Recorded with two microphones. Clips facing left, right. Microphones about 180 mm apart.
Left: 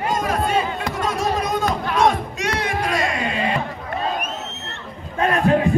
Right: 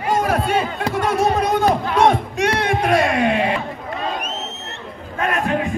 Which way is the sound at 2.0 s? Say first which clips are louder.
Right 3 dB; 60° right (ahead or behind).